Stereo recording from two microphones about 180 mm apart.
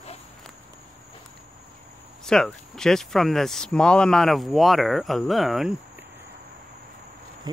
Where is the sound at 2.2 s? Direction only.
5° left (ahead or behind).